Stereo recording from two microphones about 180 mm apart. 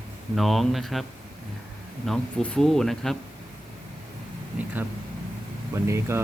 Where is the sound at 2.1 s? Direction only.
Centre (ahead or behind).